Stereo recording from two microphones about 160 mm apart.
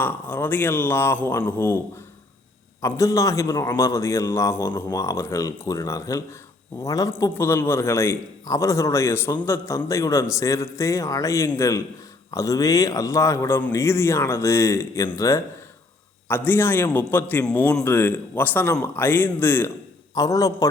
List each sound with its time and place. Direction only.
0.0 s a man's voice: 15° left (ahead or behind)
2.8 s a man's voice: 20° left (ahead or behind)